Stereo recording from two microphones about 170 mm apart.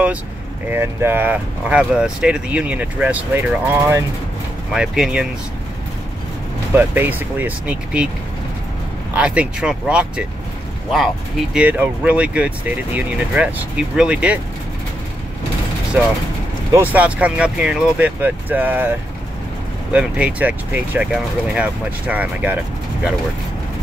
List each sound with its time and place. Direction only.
0.7 s speech: 15° right (ahead or behind)
4.7 s speech: 5° right (ahead or behind)
6.7 s speech: 10° right (ahead or behind)
9.1 s speech: 5° right (ahead or behind)
16.0 s speech: 10° right (ahead or behind)